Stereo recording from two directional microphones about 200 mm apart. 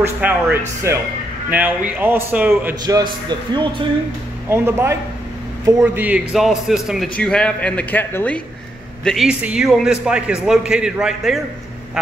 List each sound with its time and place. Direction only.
0.0 s a man's voice: 10° right (ahead or behind)
2.8 s a man's voice: 20° right (ahead or behind); by 11.4 s centre (ahead or behind)